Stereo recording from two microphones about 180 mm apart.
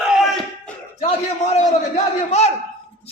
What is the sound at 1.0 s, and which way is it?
A man's voice, 35° left (ahead or behind).